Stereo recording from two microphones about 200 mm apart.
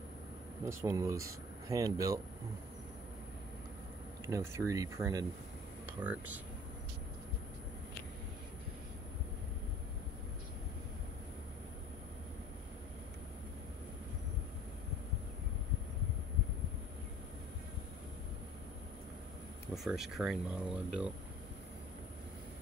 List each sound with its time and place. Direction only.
0.7 s speech: 15° right (ahead or behind)
4.3 s speech: 15° right (ahead or behind)
19.7 s speech: centre (ahead or behind)